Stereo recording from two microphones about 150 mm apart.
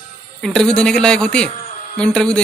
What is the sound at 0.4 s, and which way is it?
A man's voice, 5° left (ahead or behind).